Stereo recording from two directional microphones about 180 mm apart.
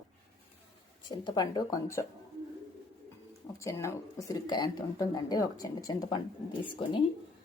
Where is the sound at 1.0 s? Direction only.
25° left (ahead or behind).